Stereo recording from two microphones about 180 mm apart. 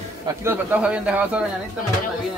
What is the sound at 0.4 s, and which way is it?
Speech, 10° right (ahead or behind).